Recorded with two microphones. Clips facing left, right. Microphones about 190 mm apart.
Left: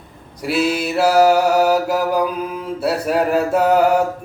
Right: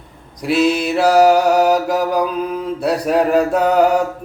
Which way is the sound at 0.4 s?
5° left (ahead or behind).